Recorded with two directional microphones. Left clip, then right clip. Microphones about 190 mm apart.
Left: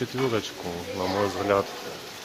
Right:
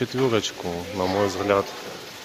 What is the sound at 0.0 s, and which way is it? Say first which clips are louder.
Speech: right 4 dB; 20° right (ahead or behind).